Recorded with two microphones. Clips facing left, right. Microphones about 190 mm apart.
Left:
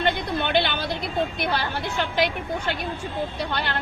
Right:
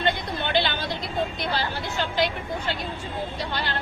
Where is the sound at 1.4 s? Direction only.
55° left (ahead or behind).